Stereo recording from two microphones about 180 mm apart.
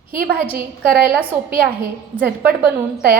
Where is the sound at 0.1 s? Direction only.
55° right (ahead or behind).